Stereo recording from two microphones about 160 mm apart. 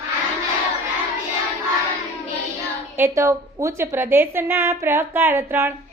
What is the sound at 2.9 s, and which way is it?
A woman's voice, 15° right (ahead or behind).